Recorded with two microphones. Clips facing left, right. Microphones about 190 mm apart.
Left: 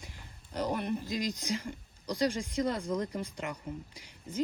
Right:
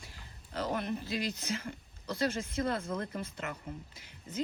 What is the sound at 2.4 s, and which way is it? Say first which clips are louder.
Speech: left 1 dB; 55° right (ahead or behind).